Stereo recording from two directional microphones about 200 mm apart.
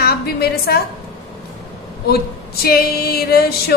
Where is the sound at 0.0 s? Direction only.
50° left (ahead or behind).